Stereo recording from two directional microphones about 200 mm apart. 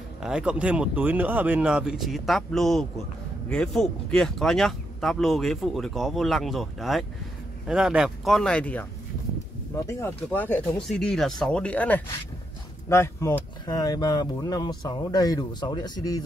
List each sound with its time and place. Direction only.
0.2 s speech: 5° right (ahead or behind); by 16.3 s 20° left (ahead or behind)